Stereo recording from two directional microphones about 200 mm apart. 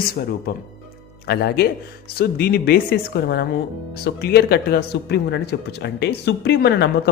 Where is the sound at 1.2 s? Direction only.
50° left (ahead or behind).